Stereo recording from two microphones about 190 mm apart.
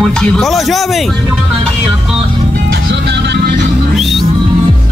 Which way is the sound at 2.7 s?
70° right (ahead or behind).